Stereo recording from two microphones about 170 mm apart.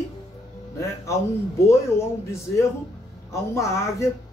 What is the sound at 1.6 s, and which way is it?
Speech, 15° left (ahead or behind).